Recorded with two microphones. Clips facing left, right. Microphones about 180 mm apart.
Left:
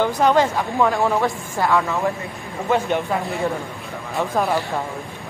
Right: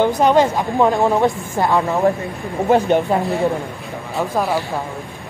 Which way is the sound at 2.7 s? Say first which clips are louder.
Right 5 dB; 35° right (ahead or behind).